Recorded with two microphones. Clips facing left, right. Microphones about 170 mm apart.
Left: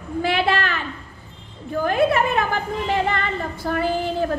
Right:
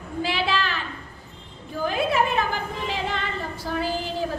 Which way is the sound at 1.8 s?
55° left (ahead or behind).